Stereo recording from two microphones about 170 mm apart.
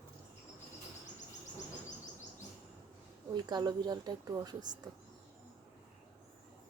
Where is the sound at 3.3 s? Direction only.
25° right (ahead or behind).